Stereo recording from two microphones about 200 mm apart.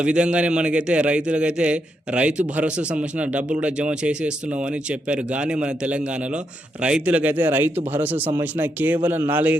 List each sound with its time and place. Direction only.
0.0 s a man's voice: 5° right (ahead or behind)